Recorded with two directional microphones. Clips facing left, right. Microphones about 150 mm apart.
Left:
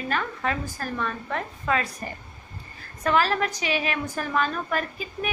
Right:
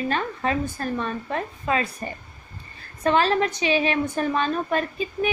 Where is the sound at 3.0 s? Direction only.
25° right (ahead or behind).